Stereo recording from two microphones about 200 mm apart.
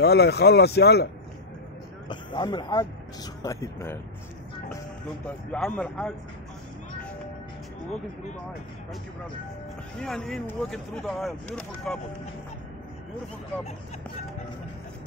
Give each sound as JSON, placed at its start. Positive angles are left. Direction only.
{"t": 0.0, "sound": "speech", "side_deg": 55}
{"t": 2.0, "sound": "speech", "side_deg": 20}
{"t": 5.5, "sound": "speech", "side_deg": 5}
{"t": 9.9, "sound": "speech", "side_deg": 5}